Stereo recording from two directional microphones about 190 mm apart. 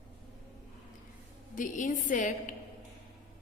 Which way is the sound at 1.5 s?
45° left (ahead or behind).